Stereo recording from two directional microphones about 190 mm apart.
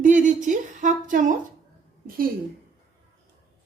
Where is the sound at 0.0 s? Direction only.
45° right (ahead or behind).